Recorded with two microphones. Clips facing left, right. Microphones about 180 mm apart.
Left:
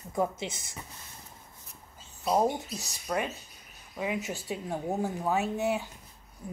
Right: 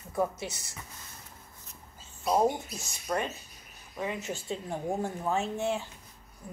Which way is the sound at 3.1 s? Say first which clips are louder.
Even; 5° left (ahead or behind).